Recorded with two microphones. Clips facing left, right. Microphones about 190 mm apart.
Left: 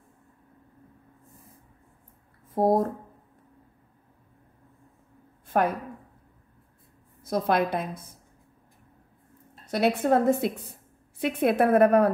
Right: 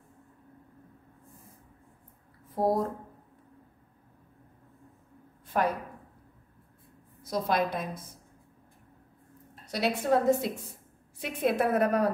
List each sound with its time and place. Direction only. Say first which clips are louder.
2.5 s speech: left 5 dB; 50° left (ahead or behind)
5.5 s a woman's voice: left 4 dB; 55° left (ahead or behind)
7.2 s a woman's voice: left 4 dB; 55° left (ahead or behind)
9.7 s a woman's voice: left 4 dB; 55° left (ahead or behind)